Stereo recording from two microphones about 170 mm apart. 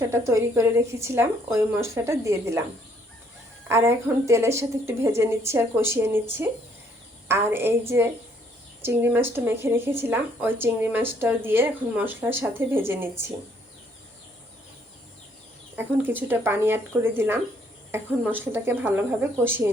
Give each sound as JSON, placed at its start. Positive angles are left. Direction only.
{"t": 0.0, "sound": "speech", "side_deg": -15}
{"t": 3.7, "sound": "speech", "side_deg": -15}
{"t": 15.7, "sound": "speech", "side_deg": -10}